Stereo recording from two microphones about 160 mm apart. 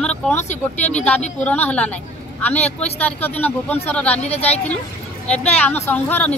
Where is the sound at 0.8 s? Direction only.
10° left (ahead or behind).